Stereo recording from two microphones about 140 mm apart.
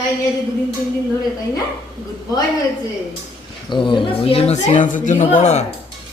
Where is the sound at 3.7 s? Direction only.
35° left (ahead or behind); by 5.6 s 55° left (ahead or behind).